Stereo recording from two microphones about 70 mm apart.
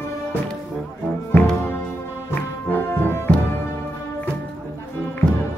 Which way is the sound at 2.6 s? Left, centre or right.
Left.